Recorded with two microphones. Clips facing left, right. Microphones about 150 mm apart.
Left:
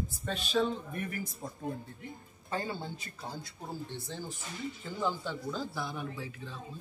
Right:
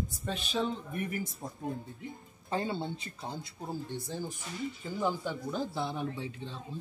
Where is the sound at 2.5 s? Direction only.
25° right (ahead or behind).